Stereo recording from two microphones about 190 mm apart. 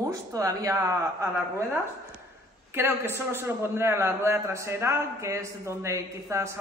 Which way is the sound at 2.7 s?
10° right (ahead or behind).